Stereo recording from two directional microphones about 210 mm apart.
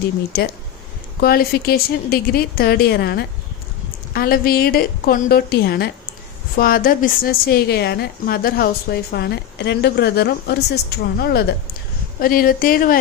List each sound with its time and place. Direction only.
0.3 s a woman's voice: 50° left (ahead or behind)